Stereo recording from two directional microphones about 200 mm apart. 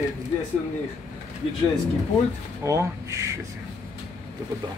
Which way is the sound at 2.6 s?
15° right (ahead or behind).